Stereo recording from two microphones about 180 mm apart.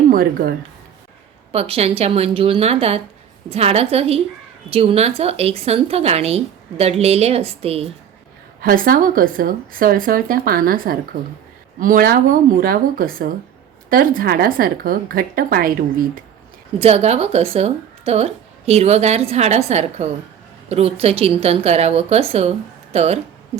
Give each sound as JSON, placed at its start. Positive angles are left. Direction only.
{"t": 0.1, "sound": "speech", "side_deg": -55}
{"t": 1.5, "sound": "speech", "side_deg": -35}
{"t": 8.6, "sound": "speech", "side_deg": -55}
{"t": 16.8, "sound": "speech", "side_deg": -35}